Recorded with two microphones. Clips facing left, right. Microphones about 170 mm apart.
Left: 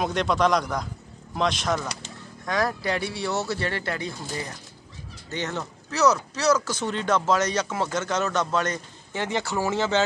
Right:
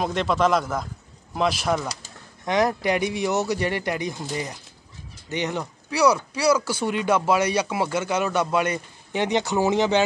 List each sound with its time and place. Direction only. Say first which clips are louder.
0.0 s a man's voice: right 1 dB; centre (ahead or behind)
2.4 s speech: right 4 dB; 20° right (ahead or behind)